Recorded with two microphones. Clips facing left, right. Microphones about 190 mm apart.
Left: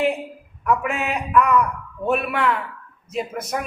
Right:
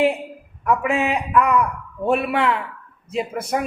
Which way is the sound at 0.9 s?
20° right (ahead or behind).